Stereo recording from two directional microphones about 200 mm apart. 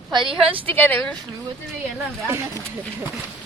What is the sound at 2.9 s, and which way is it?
Speech, 10° right (ahead or behind).